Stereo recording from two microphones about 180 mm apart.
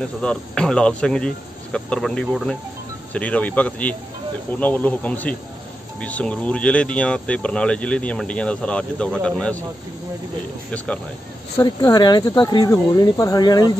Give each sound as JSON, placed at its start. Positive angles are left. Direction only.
{"t": 0.0, "sound": "speech", "side_deg": 5}
{"t": 11.5, "sound": "speech", "side_deg": 20}